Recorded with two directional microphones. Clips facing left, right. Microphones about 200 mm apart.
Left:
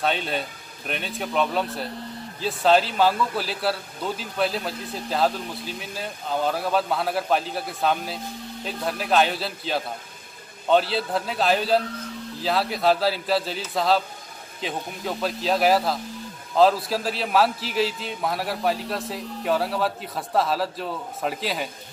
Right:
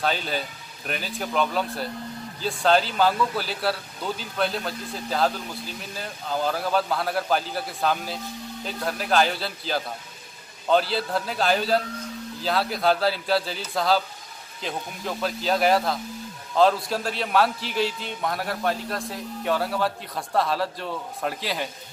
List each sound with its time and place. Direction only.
0.0 s a man's voice: centre (ahead or behind)